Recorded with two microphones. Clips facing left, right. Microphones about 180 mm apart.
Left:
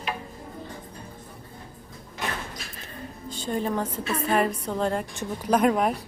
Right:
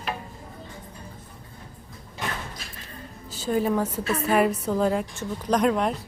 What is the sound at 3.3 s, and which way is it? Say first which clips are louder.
A woman's voice: right 4 dB; 5° right (ahead or behind).